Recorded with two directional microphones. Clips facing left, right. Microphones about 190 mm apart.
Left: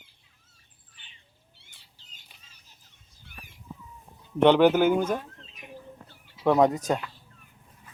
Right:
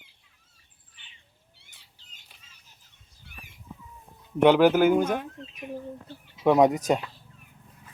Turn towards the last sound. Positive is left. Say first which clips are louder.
# right 2 dB
turn(degrees=-20)  # may be behind; listen again after turning